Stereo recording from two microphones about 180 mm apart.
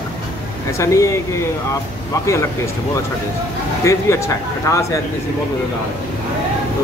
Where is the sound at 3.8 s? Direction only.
15° left (ahead or behind).